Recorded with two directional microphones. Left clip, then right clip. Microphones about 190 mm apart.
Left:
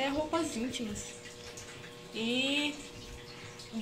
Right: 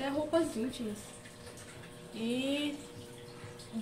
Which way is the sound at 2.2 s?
15° left (ahead or behind).